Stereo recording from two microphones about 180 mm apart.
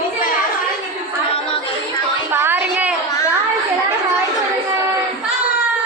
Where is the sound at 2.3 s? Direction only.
10° right (ahead or behind).